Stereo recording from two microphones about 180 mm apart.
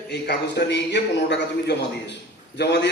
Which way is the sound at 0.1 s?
65° left (ahead or behind).